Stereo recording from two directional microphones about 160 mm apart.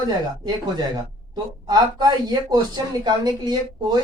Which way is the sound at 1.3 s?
25° right (ahead or behind).